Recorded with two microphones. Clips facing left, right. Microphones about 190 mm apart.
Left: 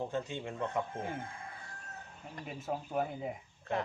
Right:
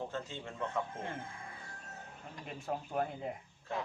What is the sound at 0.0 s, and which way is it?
Speech, 15° left (ahead or behind).